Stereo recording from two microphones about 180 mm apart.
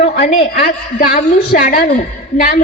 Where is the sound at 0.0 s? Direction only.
40° left (ahead or behind).